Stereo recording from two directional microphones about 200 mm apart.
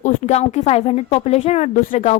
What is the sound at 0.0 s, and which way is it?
Speech, 35° left (ahead or behind).